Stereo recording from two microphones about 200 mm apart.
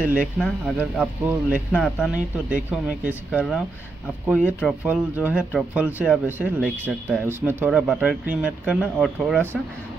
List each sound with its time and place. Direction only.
0.0 s speech: 5° right (ahead or behind)
6.6 s speech: 5° left (ahead or behind)
7.2 s speech: 10° right (ahead or behind)